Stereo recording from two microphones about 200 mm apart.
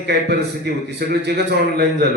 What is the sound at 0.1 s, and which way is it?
A man's voice, 55° right (ahead or behind).